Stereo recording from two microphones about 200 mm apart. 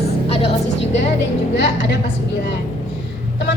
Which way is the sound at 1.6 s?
60° left (ahead or behind).